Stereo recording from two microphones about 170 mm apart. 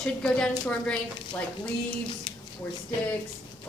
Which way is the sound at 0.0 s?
5° left (ahead or behind).